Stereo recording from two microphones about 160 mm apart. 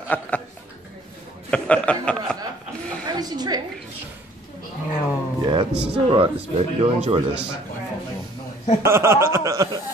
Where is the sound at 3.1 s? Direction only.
25° right (ahead or behind).